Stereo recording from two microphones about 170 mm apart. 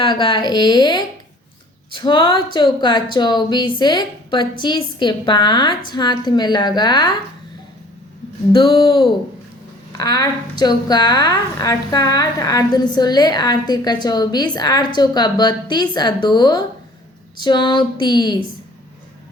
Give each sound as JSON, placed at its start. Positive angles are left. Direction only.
{"t": 0.0, "sound": "a woman's voice", "side_deg": 30}
{"t": 8.5, "sound": "a woman's voice", "side_deg": 25}